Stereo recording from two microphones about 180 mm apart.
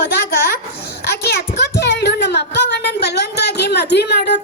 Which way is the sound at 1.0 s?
65° left (ahead or behind).